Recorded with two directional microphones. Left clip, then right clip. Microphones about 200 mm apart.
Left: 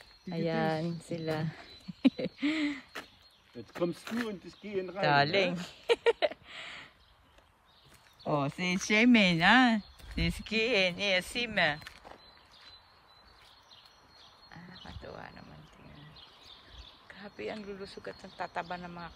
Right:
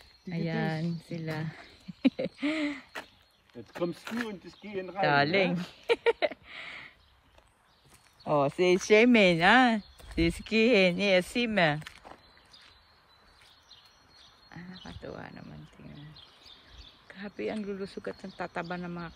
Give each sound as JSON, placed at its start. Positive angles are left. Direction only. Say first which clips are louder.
{"t": 0.3, "sound": "speech", "louder": "left 2 dB", "side_deg": 15}
{"t": 2.0, "sound": "a sound", "louder": "right 1 dB", "side_deg": 5}
{"t": 3.7, "sound": "speech", "louder": "even", "side_deg": -25}
{"t": 5.0, "sound": "speech", "louder": "right 2 dB", "side_deg": 15}
{"t": 8.2, "sound": "speech", "louder": "right 6 dB", "side_deg": 0}
{"t": 9.8, "sound": "a sound", "louder": "right 6 dB", "side_deg": 0}
{"t": 10.4, "sound": "speech", "louder": "right 4 dB", "side_deg": 10}
{"t": 14.5, "sound": "bird", "louder": "right 3 dB", "side_deg": 5}
{"t": 15.0, "sound": "a sound", "louder": "right 4 dB", "side_deg": 10}
{"t": 17.1, "sound": "speech", "louder": "right 5 dB", "side_deg": 10}
{"t": 18.5, "sound": "speech", "louder": "right 1 dB", "side_deg": 10}